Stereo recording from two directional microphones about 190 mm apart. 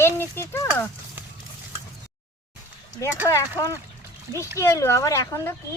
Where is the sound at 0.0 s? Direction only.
15° left (ahead or behind).